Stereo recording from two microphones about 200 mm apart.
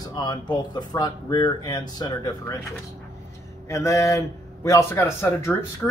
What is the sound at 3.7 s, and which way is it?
A man's voice, 15° left (ahead or behind).